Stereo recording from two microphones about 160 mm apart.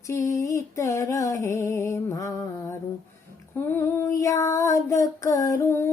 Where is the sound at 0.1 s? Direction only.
20° left (ahead or behind).